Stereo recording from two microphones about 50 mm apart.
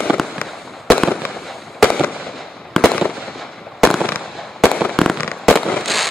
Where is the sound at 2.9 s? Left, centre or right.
Left.